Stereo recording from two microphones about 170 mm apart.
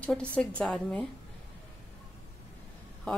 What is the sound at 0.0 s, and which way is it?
A woman's voice, 10° left (ahead or behind).